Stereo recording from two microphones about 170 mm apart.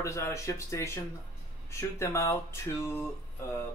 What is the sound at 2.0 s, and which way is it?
Speech, 15° left (ahead or behind).